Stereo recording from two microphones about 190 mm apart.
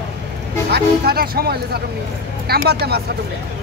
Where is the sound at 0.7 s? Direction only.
55° right (ahead or behind).